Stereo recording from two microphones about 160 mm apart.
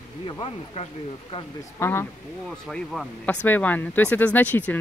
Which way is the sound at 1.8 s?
15° left (ahead or behind).